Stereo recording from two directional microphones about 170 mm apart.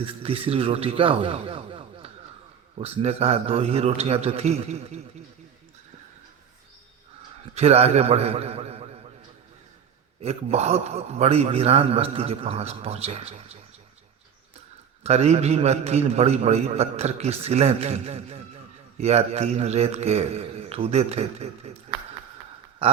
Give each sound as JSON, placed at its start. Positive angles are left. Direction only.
{"t": 0.0, "sound": "a man's voice", "side_deg": -35}
{"t": 7.5, "sound": "a man's voice", "side_deg": -35}
{"t": 10.2, "sound": "a man's voice", "side_deg": -35}
{"t": 15.0, "sound": "a man's voice", "side_deg": -40}